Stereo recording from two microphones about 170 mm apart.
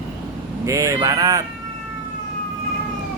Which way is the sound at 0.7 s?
20° right (ahead or behind).